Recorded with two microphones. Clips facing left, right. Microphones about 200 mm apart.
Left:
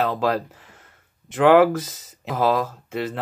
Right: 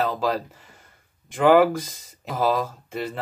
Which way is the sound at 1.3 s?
5° right (ahead or behind).